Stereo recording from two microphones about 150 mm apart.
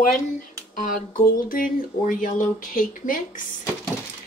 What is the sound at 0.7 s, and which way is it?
Speech, 65° left (ahead or behind).